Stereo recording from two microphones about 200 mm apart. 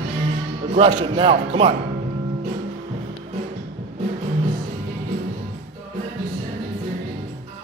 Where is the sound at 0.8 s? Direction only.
30° right (ahead or behind).